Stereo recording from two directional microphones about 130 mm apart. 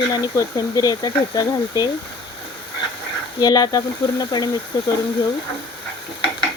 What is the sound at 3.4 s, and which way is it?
Speech, 30° left (ahead or behind).